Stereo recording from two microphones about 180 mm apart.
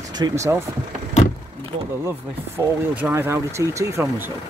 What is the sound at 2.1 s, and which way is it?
Speech, 10° right (ahead or behind).